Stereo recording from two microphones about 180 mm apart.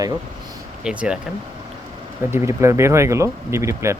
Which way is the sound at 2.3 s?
15° right (ahead or behind).